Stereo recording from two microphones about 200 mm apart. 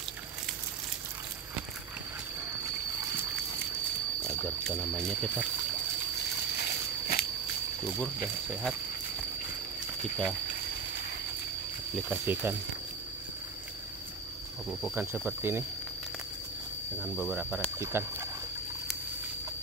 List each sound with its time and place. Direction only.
4.2 s speech: 5° left (ahead or behind)
6.6 s walk: 50° left (ahead or behind)
8.0 s speech: centre (ahead or behind)
11.9 s speech: 10° right (ahead or behind)
14.7 s speech: centre (ahead or behind)
17.0 s speech: 5° right (ahead or behind)